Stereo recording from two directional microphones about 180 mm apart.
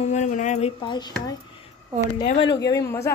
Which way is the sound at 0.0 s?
40° left (ahead or behind).